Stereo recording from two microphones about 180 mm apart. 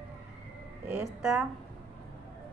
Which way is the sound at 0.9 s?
5° right (ahead or behind).